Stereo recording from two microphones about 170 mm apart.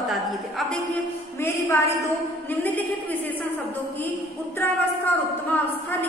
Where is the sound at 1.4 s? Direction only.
15° left (ahead or behind).